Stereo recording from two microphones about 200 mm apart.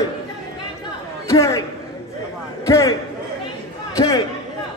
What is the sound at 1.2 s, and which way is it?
Speech, 15° left (ahead or behind).